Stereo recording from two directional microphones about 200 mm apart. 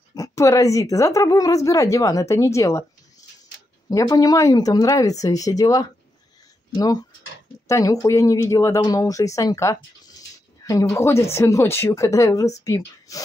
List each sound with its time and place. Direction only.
0.1 s a woman's voice: 15° left (ahead or behind)
3.9 s a woman's voice: 20° left (ahead or behind)